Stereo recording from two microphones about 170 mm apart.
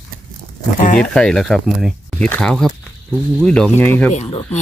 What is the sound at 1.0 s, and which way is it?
Speech, 5° left (ahead or behind).